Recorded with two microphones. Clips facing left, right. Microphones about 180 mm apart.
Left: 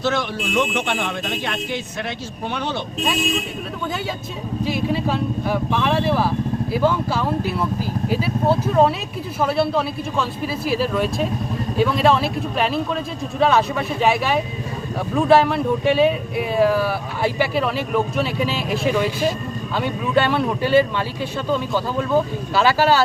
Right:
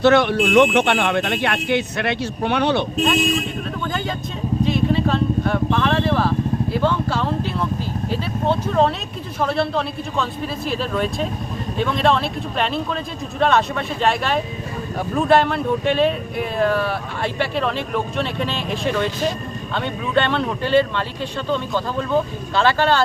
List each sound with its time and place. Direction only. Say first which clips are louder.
0.0 s speech: right 8 dB; 65° right (ahead or behind)
4.6 s vehicle: right 2 dB; 5° left (ahead or behind)
9.4 s speech: left 1 dB; 5° left (ahead or behind)